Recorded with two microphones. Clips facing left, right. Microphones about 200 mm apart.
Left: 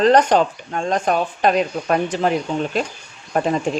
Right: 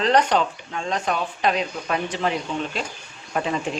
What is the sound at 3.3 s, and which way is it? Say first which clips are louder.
Speech: left 5 dB; 45° left (ahead or behind).